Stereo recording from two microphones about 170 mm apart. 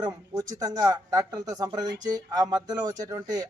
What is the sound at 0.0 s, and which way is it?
A man's voice, 20° right (ahead or behind).